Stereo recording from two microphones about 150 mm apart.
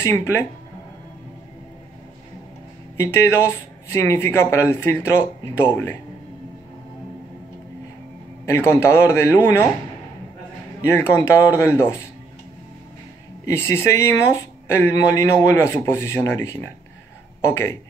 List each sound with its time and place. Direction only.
0.0 s a man's voice: 15° left (ahead or behind)
3.0 s a man's voice: 15° left (ahead or behind)
8.5 s a man's voice: 15° left (ahead or behind)
10.9 s a man's voice: 20° left (ahead or behind)
13.5 s a man's voice: 15° left (ahead or behind)